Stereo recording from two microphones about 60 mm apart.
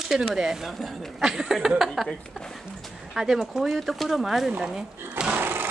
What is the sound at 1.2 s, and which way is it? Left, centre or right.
Speech, centre.